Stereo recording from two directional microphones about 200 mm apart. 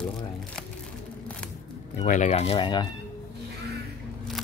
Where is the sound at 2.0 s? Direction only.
35° left (ahead or behind).